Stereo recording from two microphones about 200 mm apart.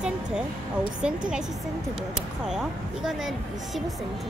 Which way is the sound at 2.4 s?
5° right (ahead or behind).